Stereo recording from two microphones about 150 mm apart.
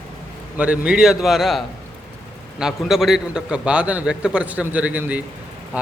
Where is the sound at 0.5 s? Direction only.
10° right (ahead or behind).